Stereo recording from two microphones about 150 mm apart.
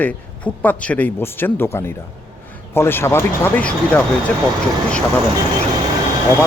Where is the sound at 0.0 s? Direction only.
10° left (ahead or behind).